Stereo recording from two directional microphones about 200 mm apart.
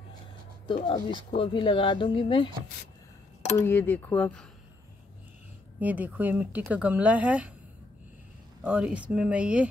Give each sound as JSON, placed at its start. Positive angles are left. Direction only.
{"t": 0.8, "sound": "speech", "side_deg": 25}
{"t": 3.5, "sound": "speech", "side_deg": 10}
{"t": 5.8, "sound": "speech", "side_deg": -10}
{"t": 8.6, "sound": "speech", "side_deg": -5}